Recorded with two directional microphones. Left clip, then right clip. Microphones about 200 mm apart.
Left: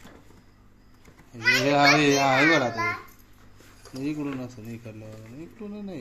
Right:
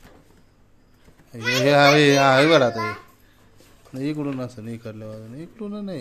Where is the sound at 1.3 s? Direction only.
50° right (ahead or behind).